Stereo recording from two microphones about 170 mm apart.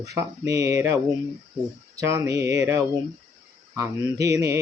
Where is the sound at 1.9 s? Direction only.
15° right (ahead or behind).